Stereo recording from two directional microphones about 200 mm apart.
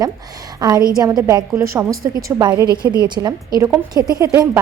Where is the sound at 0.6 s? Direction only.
20° right (ahead or behind).